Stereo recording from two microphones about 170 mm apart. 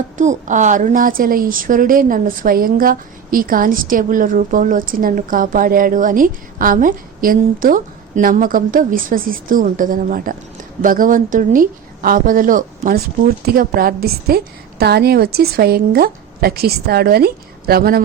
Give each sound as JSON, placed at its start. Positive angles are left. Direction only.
{"t": 0.2, "sound": "a woman's voice", "side_deg": -45}